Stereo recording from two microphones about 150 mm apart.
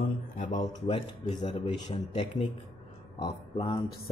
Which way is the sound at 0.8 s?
35° left (ahead or behind).